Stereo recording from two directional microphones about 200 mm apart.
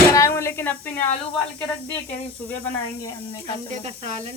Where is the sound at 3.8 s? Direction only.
35° right (ahead or behind).